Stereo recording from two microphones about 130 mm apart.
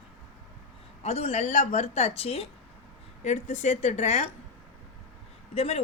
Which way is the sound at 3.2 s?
65° left (ahead or behind).